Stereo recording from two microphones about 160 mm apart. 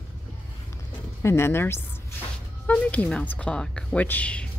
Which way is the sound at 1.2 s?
15° left (ahead or behind).